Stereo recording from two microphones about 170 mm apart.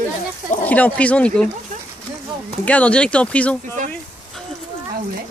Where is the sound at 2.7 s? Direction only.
10° left (ahead or behind).